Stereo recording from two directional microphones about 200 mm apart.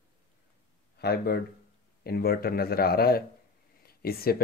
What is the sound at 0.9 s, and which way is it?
Speech, 50° left (ahead or behind).